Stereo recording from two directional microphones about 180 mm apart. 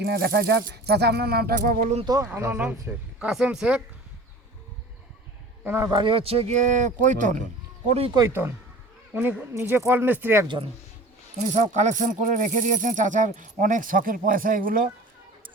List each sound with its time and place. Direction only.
0.0 s speech: 60° right (ahead or behind); by 2.0 s 40° right (ahead or behind)
2.0 s speech: 15° right (ahead or behind)
5.6 s speech: 15° right (ahead or behind)
5.9 s speech: 30° right (ahead or behind)
7.0 s rattle: 45° right (ahead or behind)
7.9 s speech: 30° right (ahead or behind)
8.2 s speech: 15° right (ahead or behind)
11.5 s rattle: 40° right (ahead or behind)